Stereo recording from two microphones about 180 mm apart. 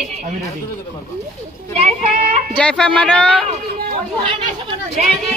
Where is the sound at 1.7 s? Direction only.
35° right (ahead or behind).